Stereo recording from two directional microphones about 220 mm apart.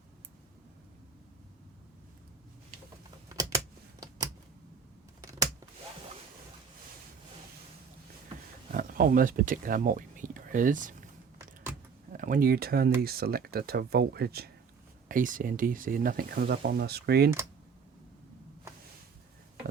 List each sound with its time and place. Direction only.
3.2 s a sound: 15° right (ahead or behind)
8.7 s speech: 40° right (ahead or behind)
12.1 s speech: 40° right (ahead or behind)